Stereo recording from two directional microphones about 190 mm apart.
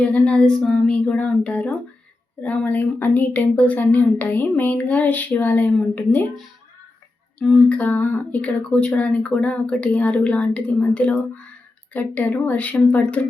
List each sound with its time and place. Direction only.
0.0 s speech: 5° left (ahead or behind)